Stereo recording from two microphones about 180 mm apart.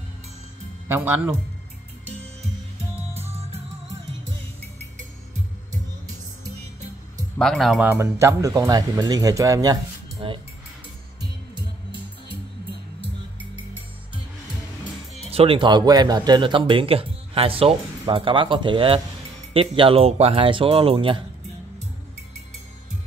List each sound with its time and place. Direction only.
0.8 s speech: 10° right (ahead or behind)
7.3 s speech: centre (ahead or behind)
7.9 s speech: 15° right (ahead or behind)
10.2 s speech: 30° right (ahead or behind)
15.2 s speech: 30° right (ahead or behind)